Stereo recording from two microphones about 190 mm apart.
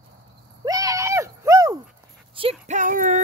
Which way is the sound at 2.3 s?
30° right (ahead or behind).